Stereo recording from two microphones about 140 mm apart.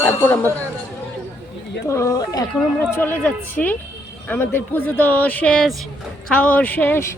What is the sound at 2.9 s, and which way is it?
A man's voice, 15° left (ahead or behind).